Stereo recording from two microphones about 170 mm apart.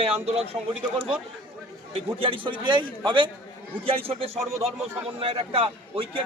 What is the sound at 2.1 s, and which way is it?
A man's voice, 30° right (ahead or behind).